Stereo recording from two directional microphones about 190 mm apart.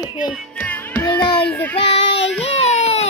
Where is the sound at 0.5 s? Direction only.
10° left (ahead or behind).